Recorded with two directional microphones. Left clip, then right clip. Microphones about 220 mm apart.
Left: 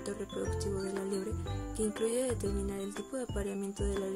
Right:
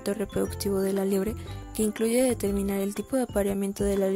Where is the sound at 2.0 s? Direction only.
35° right (ahead or behind).